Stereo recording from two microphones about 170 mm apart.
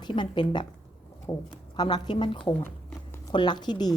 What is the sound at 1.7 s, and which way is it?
Speech, 25° left (ahead or behind).